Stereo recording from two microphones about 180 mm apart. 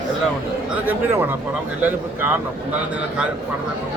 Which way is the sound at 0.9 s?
10° right (ahead or behind).